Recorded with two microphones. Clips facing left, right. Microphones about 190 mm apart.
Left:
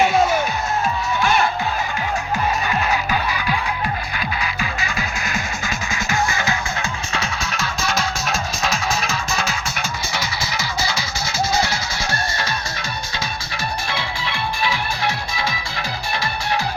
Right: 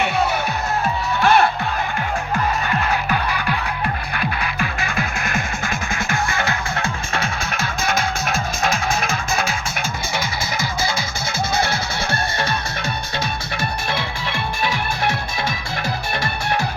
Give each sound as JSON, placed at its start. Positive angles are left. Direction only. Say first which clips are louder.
{"t": 0.0, "sound": "music", "louder": "left 4 dB", "side_deg": -60}
{"t": 2.6, "sound": "music", "louder": "even", "side_deg": -55}
{"t": 13.9, "sound": "music", "louder": "right 1 dB", "side_deg": -50}